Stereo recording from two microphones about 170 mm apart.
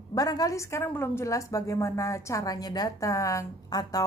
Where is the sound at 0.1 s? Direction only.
20° left (ahead or behind).